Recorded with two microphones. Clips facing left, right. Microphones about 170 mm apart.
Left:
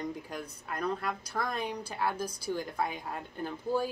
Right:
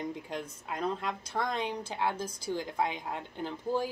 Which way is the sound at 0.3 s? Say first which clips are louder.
Right 2 dB; 25° right (ahead or behind).